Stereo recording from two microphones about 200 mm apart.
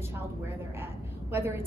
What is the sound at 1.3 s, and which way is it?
Speech, 10° right (ahead or behind).